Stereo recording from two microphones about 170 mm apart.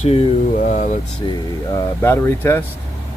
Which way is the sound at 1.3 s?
15° left (ahead or behind).